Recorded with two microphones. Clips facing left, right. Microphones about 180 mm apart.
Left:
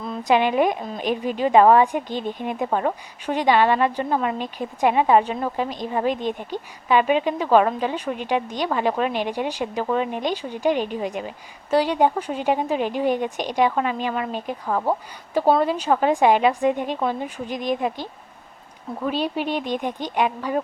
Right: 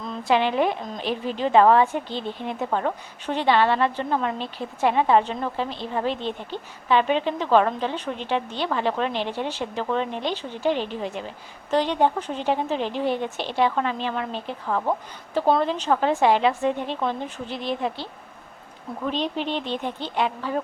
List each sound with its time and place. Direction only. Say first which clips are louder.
0.2 s a woman's voice: left 2 dB; 15° left (ahead or behind)